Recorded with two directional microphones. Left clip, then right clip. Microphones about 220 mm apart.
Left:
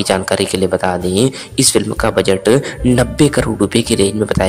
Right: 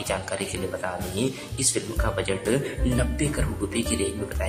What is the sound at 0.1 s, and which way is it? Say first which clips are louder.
Speech: left 14 dB; 40° left (ahead or behind).